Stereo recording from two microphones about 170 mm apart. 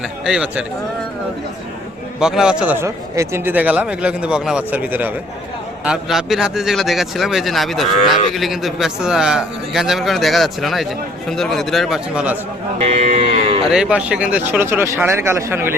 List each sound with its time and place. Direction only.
0.3 s a man's voice: 5° right (ahead or behind)
2.1 s a man's voice: 5° right (ahead or behind)
2.8 s a man's voice: 15° right (ahead or behind)
12.8 s moo: 40° right (ahead or behind)
13.7 s a man's voice: 5° right (ahead or behind)